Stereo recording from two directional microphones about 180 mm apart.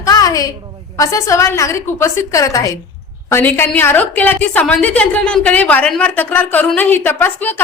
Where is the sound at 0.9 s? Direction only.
20° left (ahead or behind).